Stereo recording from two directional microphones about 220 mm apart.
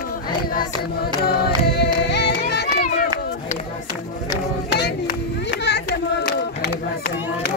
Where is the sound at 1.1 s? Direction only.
45° left (ahead or behind).